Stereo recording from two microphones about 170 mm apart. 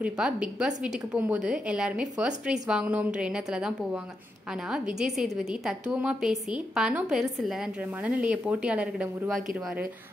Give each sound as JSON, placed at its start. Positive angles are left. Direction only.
{"t": 0.0, "sound": "a woman's voice", "side_deg": -5}